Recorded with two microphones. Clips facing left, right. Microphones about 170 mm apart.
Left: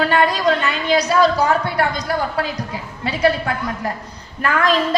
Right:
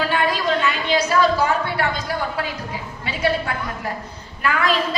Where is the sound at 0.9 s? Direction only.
40° left (ahead or behind).